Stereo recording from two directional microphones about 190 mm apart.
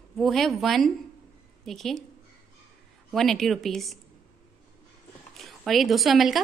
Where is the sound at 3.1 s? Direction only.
Centre (ahead or behind).